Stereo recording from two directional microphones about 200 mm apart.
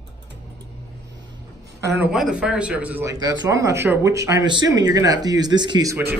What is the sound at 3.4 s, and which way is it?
Speech, 15° right (ahead or behind).